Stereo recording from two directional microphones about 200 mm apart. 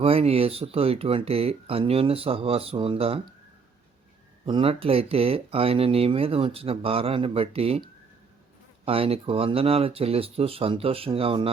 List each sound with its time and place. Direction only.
0.0 s speech: 30° right (ahead or behind)
4.4 s speech: 25° right (ahead or behind)